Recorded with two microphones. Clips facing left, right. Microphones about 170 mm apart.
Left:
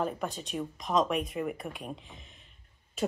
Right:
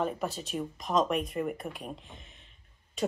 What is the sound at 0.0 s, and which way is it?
Speech, centre (ahead or behind).